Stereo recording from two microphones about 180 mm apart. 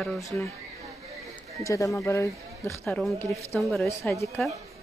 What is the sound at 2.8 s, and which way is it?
Speech, centre (ahead or behind).